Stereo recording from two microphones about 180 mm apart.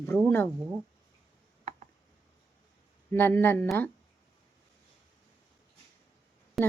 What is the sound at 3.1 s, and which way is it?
Speech, 10° left (ahead or behind).